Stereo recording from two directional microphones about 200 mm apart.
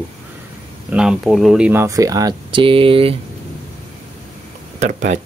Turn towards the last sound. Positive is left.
turn(degrees=-35)  # may be behind; listen again after turning